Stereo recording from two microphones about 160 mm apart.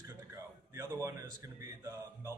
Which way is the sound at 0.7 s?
20° right (ahead or behind).